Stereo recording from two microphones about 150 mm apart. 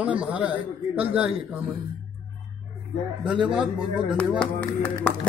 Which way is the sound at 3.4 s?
5° right (ahead or behind).